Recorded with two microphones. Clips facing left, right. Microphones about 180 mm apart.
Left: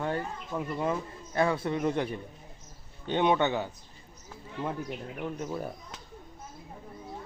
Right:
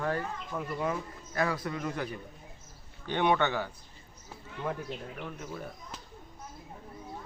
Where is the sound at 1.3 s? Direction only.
25° left (ahead or behind).